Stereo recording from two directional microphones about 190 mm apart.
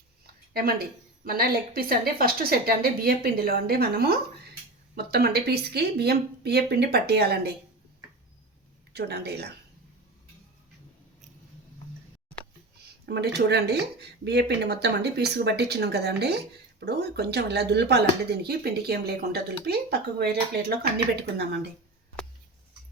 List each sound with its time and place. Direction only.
0.5 s a woman's voice: 50° right (ahead or behind)
8.9 s a woman's voice: 60° right (ahead or behind)
13.1 s a woman's voice: 60° right (ahead or behind)